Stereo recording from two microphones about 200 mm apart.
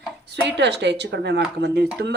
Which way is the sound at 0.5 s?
60° right (ahead or behind).